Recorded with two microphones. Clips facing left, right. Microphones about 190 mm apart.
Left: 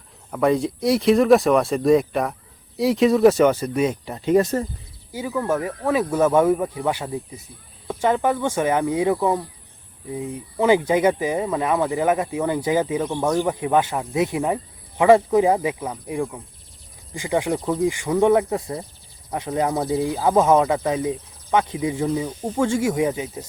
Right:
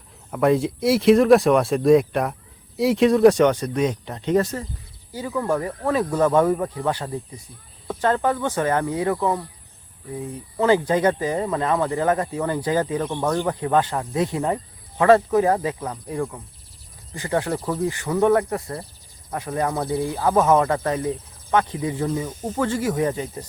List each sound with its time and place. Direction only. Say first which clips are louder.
0.3 s speech: right 1 dB; centre (ahead or behind)